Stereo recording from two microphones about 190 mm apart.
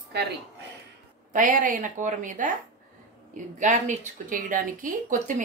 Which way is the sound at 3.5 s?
40° right (ahead or behind).